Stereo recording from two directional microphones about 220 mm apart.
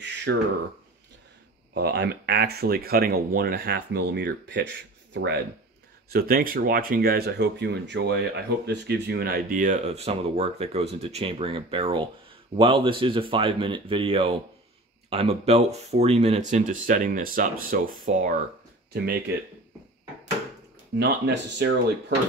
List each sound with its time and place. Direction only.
0.0 s a sound: 50° right (ahead or behind)
1.7 s speech: 50° right (ahead or behind)
21.0 s speech: 50° right (ahead or behind)